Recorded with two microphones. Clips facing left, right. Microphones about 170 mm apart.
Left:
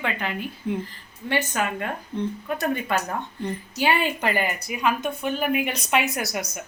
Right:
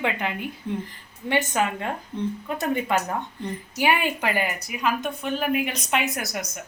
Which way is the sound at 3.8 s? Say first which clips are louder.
Even; 10° right (ahead or behind).